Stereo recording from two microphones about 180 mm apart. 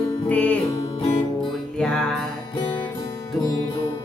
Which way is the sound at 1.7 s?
5° left (ahead or behind).